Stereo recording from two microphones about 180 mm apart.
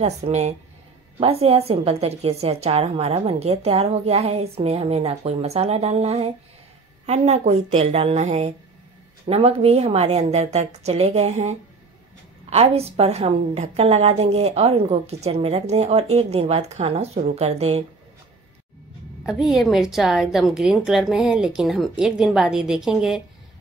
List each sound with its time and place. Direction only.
0.0 s a woman's voice: 35° right (ahead or behind)
19.2 s a woman's voice: centre (ahead or behind)